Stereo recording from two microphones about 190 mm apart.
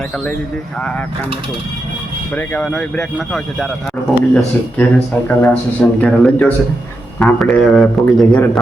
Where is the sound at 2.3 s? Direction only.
5° left (ahead or behind).